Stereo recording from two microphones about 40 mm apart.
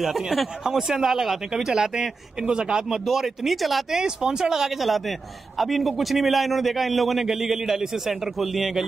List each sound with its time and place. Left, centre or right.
0.0 s a man's voice: centre; by 3.0 s right
3.1 s a man's voice: centre
3.9 s speech: centre
4.7 s a man's voice: centre